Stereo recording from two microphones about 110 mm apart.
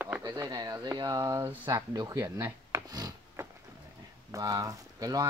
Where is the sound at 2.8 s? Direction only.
35° right (ahead or behind).